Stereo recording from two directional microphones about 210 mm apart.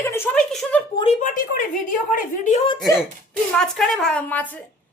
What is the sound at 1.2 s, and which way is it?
A woman's voice, 40° left (ahead or behind).